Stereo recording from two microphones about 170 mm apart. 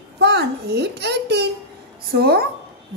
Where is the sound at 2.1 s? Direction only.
65° right (ahead or behind).